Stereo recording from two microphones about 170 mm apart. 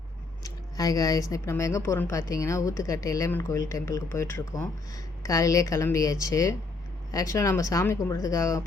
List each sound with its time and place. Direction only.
0.4 s a woman's voice: 20° left (ahead or behind)